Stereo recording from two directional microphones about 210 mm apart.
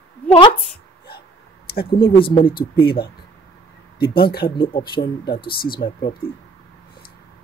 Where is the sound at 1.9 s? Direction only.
25° left (ahead or behind).